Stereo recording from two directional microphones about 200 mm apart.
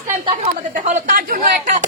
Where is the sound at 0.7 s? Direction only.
40° right (ahead or behind).